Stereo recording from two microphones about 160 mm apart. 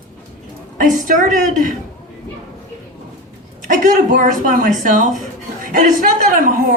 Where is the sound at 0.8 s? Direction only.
55° right (ahead or behind).